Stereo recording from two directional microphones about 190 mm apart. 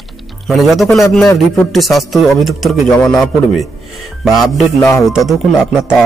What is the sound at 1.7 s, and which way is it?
Speech, centre (ahead or behind).